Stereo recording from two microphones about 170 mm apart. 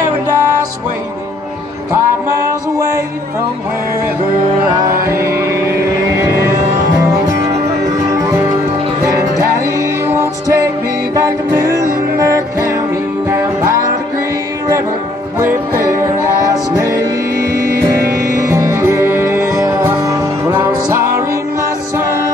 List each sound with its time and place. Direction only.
2.0 s music: 15° right (ahead or behind)
8.1 s music: 15° right (ahead or behind)
9.8 s music: 15° right (ahead or behind)
15.3 s music: 15° right (ahead or behind)
17.7 s music: 65° right (ahead or behind)
18.2 s music: 20° right (ahead or behind)